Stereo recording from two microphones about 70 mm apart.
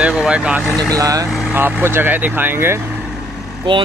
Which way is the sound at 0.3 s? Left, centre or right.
Centre.